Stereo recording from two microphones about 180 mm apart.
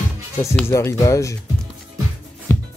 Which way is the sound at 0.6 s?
15° left (ahead or behind).